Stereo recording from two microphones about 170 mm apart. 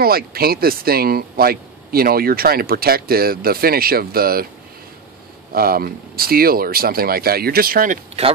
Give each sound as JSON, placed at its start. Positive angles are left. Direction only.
{"t": 0.0, "sound": "speech", "side_deg": -65}
{"t": 5.5, "sound": "speech", "side_deg": -60}